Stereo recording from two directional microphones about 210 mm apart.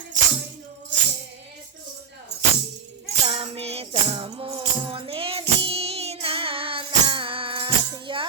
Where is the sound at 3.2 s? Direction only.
30° right (ahead or behind).